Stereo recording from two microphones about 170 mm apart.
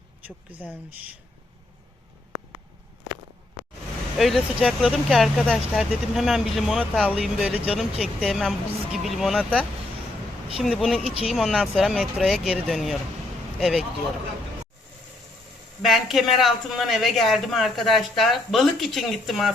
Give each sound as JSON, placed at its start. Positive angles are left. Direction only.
{"t": 4.2, "sound": "speech", "side_deg": 0}
{"t": 15.8, "sound": "speech", "side_deg": 0}